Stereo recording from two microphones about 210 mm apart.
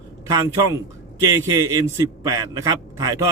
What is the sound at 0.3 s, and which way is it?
A man's voice, 15° right (ahead or behind).